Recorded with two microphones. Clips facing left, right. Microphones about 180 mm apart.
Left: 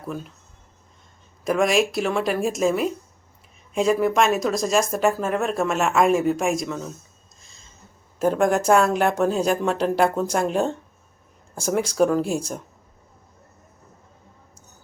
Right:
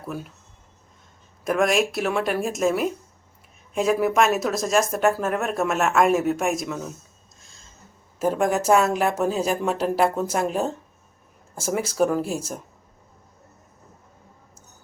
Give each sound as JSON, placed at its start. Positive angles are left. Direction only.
{"t": 0.0, "sound": "speech", "side_deg": -5}
{"t": 1.5, "sound": "speech", "side_deg": 0}
{"t": 8.2, "sound": "speech", "side_deg": -5}